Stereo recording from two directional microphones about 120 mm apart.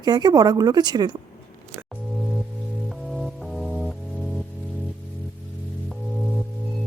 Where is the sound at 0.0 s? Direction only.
35° right (ahead or behind).